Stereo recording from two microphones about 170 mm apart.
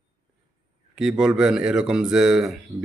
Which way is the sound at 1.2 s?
5° right (ahead or behind).